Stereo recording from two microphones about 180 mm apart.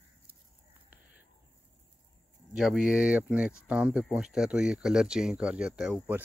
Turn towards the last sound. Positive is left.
turn(degrees=-5)  # may be behind; listen again after turning